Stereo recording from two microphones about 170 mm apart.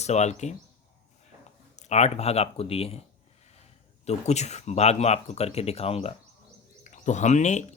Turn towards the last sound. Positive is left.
turn(degrees=45)  # may be behind; listen again after turning